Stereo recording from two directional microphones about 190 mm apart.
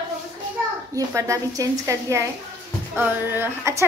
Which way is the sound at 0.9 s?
15° right (ahead or behind).